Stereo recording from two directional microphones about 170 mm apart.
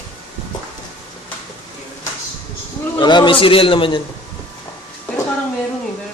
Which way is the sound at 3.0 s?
25° left (ahead or behind).